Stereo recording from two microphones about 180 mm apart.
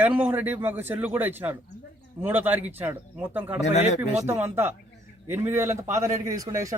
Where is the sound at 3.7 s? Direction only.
40° left (ahead or behind).